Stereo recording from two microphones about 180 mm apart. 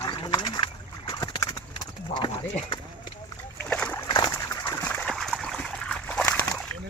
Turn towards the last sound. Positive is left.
turn(degrees=5)  # may be behind; listen again after turning